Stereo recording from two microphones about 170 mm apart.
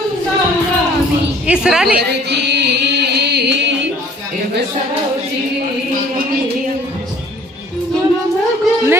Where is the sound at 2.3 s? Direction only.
80° right.